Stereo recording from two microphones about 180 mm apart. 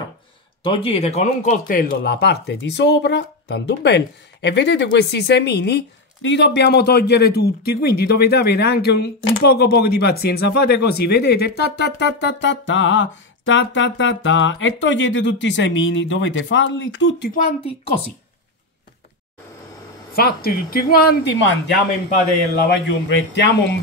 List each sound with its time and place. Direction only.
0.7 s speech: 35° left (ahead or behind); by 17.3 s 90° left
20.2 s speech: 55° left (ahead or behind); by 23.8 s 75° left (ahead or behind)